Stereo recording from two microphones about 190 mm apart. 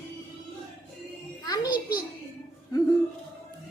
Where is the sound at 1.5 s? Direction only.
20° left (ahead or behind).